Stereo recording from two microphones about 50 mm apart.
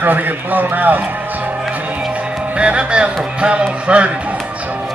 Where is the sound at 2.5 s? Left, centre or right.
Right.